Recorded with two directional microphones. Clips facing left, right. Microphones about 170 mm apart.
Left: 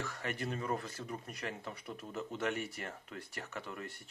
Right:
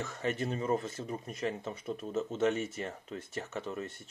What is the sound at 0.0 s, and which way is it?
Speech, 25° right (ahead or behind).